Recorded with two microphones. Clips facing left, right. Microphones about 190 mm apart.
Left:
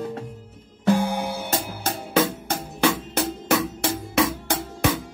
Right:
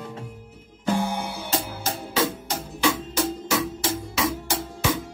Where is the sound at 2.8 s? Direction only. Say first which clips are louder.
Left 1 dB; 60° left (ahead or behind).